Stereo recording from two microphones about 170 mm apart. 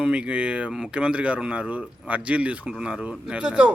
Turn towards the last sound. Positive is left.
turn(degrees=-5)  # may be behind; listen again after turning